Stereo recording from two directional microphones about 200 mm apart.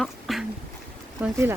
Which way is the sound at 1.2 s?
10° right (ahead or behind).